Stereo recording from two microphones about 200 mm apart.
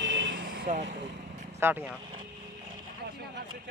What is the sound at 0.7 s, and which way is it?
Speech, 40° right (ahead or behind).